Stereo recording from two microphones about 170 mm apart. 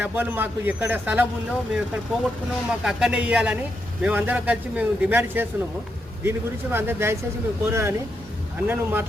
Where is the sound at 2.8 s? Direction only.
5° right (ahead or behind).